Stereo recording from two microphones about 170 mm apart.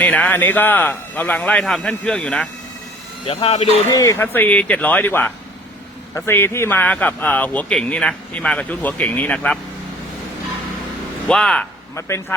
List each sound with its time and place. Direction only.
0.0 s speech: 10° left (ahead or behind)
3.2 s speech: 35° left (ahead or behind)
3.9 s speech: 15° left (ahead or behind)
11.3 s speech: 5° left (ahead or behind)
11.9 s speech: 15° left (ahead or behind)